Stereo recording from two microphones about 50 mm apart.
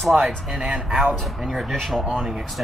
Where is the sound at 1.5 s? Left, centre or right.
Centre.